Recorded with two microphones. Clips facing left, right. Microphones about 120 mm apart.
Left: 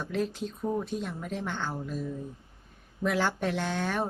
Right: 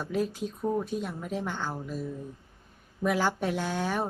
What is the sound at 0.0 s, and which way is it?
Speech, 10° right (ahead or behind).